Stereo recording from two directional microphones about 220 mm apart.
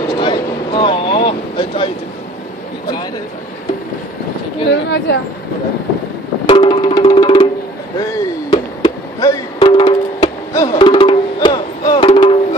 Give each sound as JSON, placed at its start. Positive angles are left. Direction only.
{"t": 0.1, "sound": "a sound", "side_deg": 20}
{"t": 4.6, "sound": "a woman's voice", "side_deg": 50}
{"t": 6.4, "sound": "music", "side_deg": 20}